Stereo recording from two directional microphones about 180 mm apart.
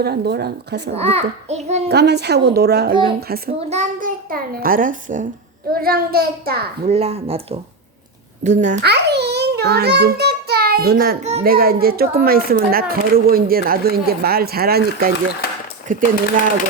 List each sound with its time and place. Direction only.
0.0 s speech: 65° right (ahead or behind)
0.9 s a child's voice: 35° right (ahead or behind)
1.9 s speech: 65° right (ahead or behind)
3.7 s a child's voice: 45° right (ahead or behind)
6.8 s a child's voice: 35° right (ahead or behind)
8.8 s a child's voice: 65° right (ahead or behind)
11.2 s a child's voice: 35° right (ahead or behind)
11.4 s speech: 55° right (ahead or behind)
15.9 s a child's voice: 45° right (ahead or behind)